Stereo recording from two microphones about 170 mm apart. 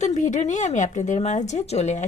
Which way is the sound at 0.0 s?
45° left (ahead or behind).